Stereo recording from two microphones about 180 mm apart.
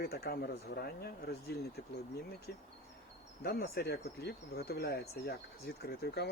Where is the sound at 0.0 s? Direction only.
60° left (ahead or behind).